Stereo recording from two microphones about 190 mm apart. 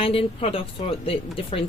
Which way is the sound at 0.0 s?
30° left (ahead or behind).